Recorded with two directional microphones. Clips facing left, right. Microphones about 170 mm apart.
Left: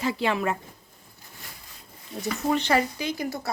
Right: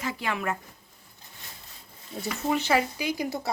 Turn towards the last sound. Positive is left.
turn(degrees=-20)  # may be behind; listen again after turning